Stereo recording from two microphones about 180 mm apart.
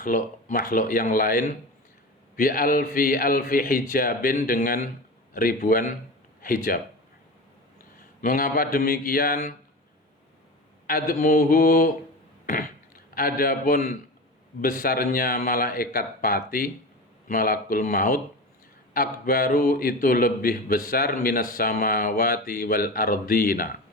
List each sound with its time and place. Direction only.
0.0 s speech: 50° left (ahead or behind)
8.2 s speech: 50° left (ahead or behind)
10.8 s speech: 50° left (ahead or behind)
13.1 s a man's voice: 55° left (ahead or behind)